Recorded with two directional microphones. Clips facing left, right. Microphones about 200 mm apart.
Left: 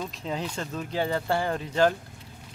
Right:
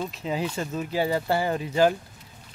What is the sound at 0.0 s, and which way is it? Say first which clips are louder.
Speech: right 3 dB; 5° right (ahead or behind).